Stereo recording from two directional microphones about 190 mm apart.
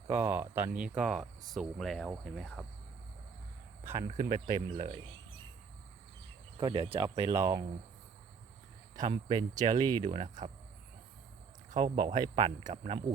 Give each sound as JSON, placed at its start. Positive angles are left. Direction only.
{"t": 0.1, "sound": "speech", "side_deg": -10}
{"t": 4.4, "sound": "speech", "side_deg": -25}
{"t": 6.6, "sound": "speech", "side_deg": -25}
{"t": 9.0, "sound": "speech", "side_deg": -20}
{"t": 10.1, "sound": "speech", "side_deg": -35}
{"t": 11.7, "sound": "speech", "side_deg": -40}
{"t": 12.0, "sound": "speech", "side_deg": -25}